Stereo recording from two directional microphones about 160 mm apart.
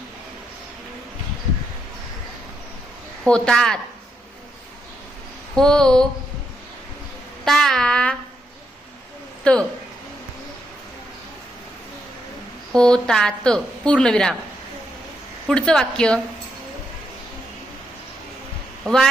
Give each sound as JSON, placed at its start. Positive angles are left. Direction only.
{"t": 3.2, "sound": "a woman's voice", "side_deg": 5}
{"t": 5.5, "sound": "a woman's voice", "side_deg": 5}
{"t": 7.4, "sound": "a woman's voice", "side_deg": 0}
{"t": 9.4, "sound": "speech", "side_deg": 5}
{"t": 12.7, "sound": "a woman's voice", "side_deg": 5}
{"t": 15.4, "sound": "a woman's voice", "side_deg": 5}
{"t": 18.8, "sound": "a woman's voice", "side_deg": 5}